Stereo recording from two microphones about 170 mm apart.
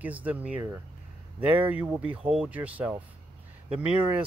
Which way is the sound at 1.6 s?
10° right (ahead or behind).